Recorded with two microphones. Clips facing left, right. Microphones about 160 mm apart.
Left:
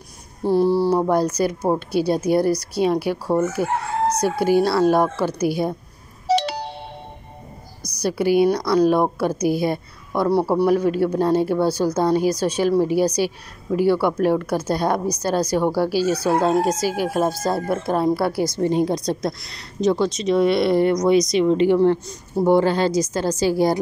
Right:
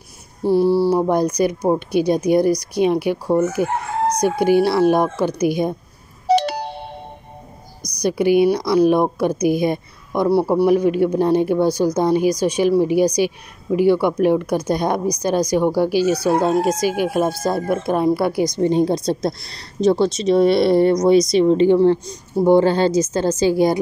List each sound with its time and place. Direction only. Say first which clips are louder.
1.0 s speech: right 2 dB; 15° right (ahead or behind)
6.2 s telephone dialing: right 3 dB; 50° right (ahead or behind)
7.8 s a woman's voice: right 3 dB; 15° right (ahead or behind)